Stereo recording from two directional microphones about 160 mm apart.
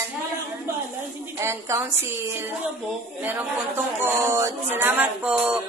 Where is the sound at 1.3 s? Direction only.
15° right (ahead or behind).